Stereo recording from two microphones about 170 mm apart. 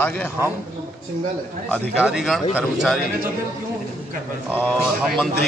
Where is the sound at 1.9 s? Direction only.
5° right (ahead or behind).